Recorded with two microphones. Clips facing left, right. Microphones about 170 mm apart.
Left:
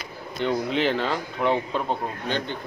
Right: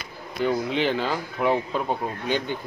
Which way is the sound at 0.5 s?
Centre (ahead or behind).